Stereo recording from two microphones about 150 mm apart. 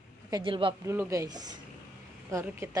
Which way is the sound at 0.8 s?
20° right (ahead or behind).